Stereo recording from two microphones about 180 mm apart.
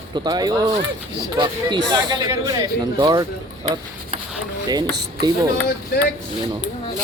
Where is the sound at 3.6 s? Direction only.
30° right (ahead or behind).